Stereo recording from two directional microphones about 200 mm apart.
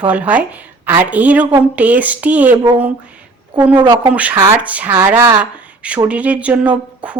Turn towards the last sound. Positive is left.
turn(degrees=-5)  # may be behind; listen again after turning